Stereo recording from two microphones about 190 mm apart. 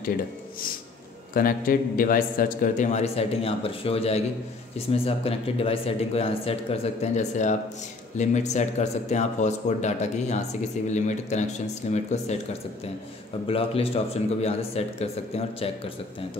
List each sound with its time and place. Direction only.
1.3 s a man's voice: 50° left (ahead or behind)
13.5 s a man's voice: 30° left (ahead or behind)